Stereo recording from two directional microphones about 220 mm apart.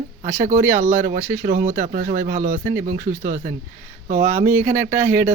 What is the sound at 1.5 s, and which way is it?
Speech, 40° right (ahead or behind).